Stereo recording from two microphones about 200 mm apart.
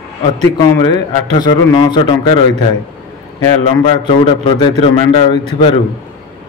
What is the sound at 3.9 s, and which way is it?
A man's voice, 25° left (ahead or behind).